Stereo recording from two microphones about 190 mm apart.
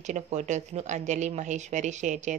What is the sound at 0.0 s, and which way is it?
Speech, 40° right (ahead or behind).